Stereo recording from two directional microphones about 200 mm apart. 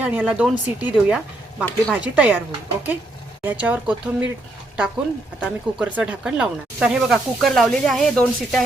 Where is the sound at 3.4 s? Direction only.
5° right (ahead or behind).